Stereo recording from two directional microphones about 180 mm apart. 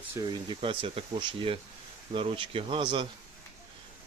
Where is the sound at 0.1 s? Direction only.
25° right (ahead or behind).